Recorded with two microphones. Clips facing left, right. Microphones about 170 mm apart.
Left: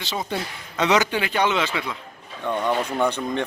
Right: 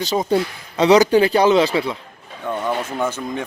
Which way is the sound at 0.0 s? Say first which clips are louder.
Right 9 dB; 40° right (ahead or behind).